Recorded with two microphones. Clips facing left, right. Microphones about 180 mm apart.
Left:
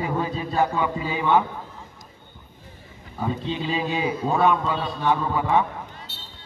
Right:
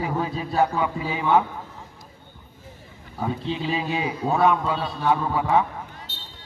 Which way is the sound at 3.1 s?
5° right (ahead or behind).